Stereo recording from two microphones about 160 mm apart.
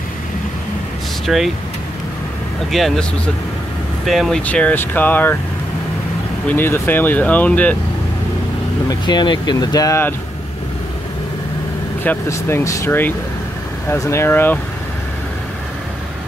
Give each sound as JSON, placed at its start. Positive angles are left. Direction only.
{"t": 1.2, "sound": "speech", "side_deg": 0}
{"t": 2.7, "sound": "speech", "side_deg": 0}
{"t": 6.5, "sound": "speech", "side_deg": 15}
{"t": 8.8, "sound": "speech", "side_deg": 25}
{"t": 12.0, "sound": "speech", "side_deg": 15}